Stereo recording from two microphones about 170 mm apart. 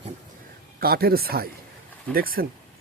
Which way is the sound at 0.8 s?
65° right (ahead or behind).